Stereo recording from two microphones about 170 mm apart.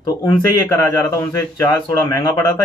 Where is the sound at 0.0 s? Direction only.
20° left (ahead or behind).